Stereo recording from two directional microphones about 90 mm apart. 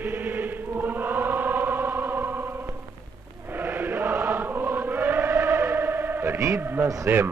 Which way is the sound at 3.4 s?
20° right (ahead or behind).